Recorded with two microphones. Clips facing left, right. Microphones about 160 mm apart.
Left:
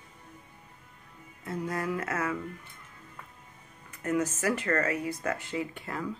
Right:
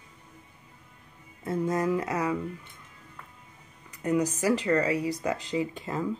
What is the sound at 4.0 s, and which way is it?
A woman's voice, 15° right (ahead or behind).